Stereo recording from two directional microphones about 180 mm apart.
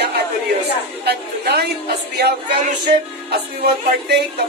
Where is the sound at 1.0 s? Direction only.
60° right (ahead or behind).